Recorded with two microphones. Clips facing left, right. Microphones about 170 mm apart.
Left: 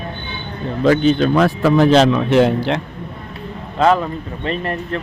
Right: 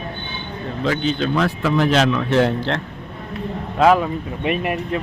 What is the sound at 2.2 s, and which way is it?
Speech, 15° left (ahead or behind).